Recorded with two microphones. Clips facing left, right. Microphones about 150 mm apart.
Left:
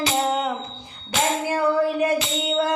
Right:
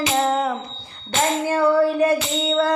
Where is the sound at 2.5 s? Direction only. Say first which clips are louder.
Right 3 dB; 20° left (ahead or behind).